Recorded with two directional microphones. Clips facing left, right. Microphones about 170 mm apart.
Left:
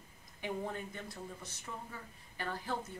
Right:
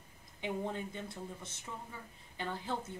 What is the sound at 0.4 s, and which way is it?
Speech, 20° right (ahead or behind).